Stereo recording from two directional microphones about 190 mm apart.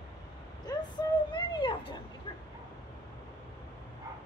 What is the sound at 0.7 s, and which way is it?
Vehicle, 20° left (ahead or behind).